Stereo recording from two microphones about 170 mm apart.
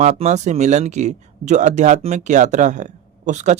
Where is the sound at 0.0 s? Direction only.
40° right (ahead or behind).